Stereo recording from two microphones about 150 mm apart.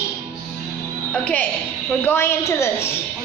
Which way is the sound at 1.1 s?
10° left (ahead or behind).